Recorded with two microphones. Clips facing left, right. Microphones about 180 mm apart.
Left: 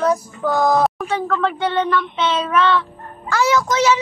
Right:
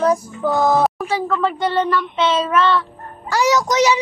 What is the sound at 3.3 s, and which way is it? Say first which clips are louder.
Speech: right 1 dB; 15° right (ahead or behind).